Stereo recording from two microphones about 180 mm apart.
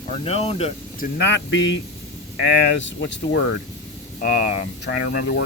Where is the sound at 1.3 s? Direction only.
90° left.